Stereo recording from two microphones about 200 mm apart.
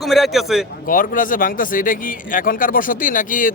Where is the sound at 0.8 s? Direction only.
45° left (ahead or behind).